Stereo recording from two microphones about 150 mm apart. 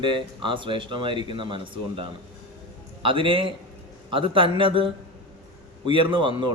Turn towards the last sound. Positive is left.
turn(degrees=-35)  # may be behind; listen again after turning